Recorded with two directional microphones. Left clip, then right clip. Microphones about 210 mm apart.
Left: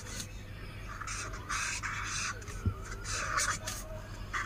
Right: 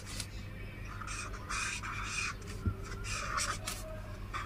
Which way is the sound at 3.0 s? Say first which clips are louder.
Left 3 dB; 5° left (ahead or behind).